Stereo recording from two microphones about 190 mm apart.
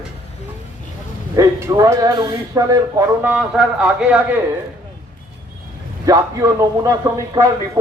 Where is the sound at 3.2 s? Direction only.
5° right (ahead or behind).